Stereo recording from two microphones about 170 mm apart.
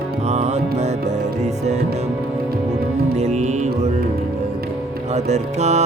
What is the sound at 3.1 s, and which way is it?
Music, 40° right (ahead or behind).